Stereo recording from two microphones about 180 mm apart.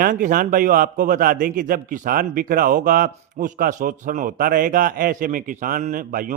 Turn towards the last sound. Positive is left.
turn(degrees=-50)  # may be behind; listen again after turning